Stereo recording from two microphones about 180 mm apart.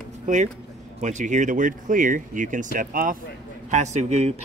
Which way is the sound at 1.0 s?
40° right (ahead or behind).